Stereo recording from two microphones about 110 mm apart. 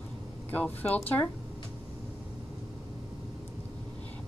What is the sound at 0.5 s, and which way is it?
Speech, 15° left (ahead or behind).